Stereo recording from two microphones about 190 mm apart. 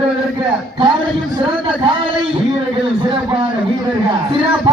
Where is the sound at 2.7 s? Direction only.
30° right (ahead or behind).